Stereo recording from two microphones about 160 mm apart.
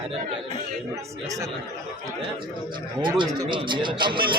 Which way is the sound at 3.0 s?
30° right (ahead or behind).